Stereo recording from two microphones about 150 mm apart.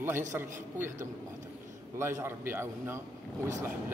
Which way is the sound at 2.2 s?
15° right (ahead or behind).